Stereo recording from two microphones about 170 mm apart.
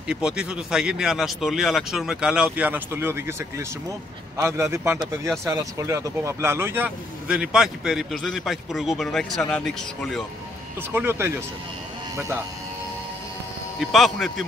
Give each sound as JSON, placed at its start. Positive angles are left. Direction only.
{"t": 0.1, "sound": "a man's voice", "side_deg": -5}
{"t": 10.9, "sound": "a man's voice", "side_deg": -15}
{"t": 13.7, "sound": "speech", "side_deg": 0}